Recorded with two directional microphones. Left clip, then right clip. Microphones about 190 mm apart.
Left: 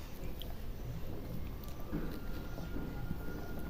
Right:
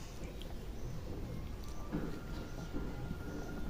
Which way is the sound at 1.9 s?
40° right (ahead or behind).